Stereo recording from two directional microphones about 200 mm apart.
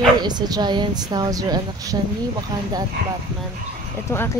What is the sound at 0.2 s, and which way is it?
A woman's voice, 20° right (ahead or behind).